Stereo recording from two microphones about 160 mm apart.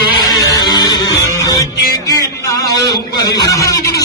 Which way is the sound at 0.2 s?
25° left (ahead or behind).